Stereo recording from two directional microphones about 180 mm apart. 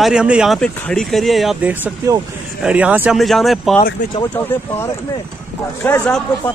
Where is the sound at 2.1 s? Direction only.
20° right (ahead or behind).